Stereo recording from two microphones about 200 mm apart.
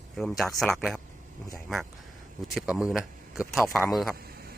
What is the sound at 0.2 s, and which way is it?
Speech, centre (ahead or behind).